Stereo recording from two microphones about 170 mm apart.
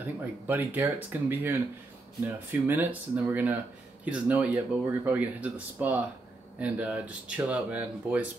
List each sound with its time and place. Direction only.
0.5 s speech: 10° right (ahead or behind)